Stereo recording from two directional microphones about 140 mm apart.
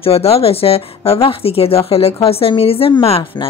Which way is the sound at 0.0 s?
45° left (ahead or behind).